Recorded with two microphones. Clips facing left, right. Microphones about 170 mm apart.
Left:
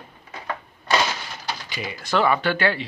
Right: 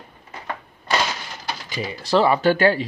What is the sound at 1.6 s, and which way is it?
Speech, 35° right (ahead or behind).